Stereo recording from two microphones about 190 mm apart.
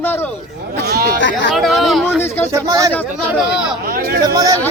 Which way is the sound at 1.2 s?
70° left (ahead or behind).